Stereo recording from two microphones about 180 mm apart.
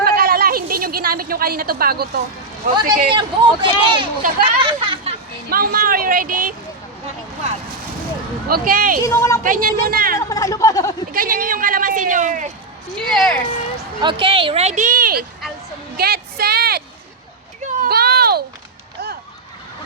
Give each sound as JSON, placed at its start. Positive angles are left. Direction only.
{"t": 0.0, "sound": "a sound", "side_deg": -55}
{"t": 2.7, "sound": "speech", "side_deg": -25}
{"t": 5.5, "sound": "speech", "side_deg": -55}
{"t": 8.4, "sound": "speech", "side_deg": -55}
{"t": 9.0, "sound": "a woman's voice", "side_deg": 15}
{"t": 9.4, "sound": "speech", "side_deg": -50}
{"t": 10.2, "sound": "speech", "side_deg": 20}
{"t": 11.1, "sound": "speech", "side_deg": -50}
{"t": 13.0, "sound": "speech", "side_deg": 5}
{"t": 14.0, "sound": "speech", "side_deg": -25}
{"t": 16.0, "sound": "a sound", "side_deg": -60}
{"t": 17.6, "sound": "a sound", "side_deg": -45}
{"t": 17.8, "sound": "a sound", "side_deg": -60}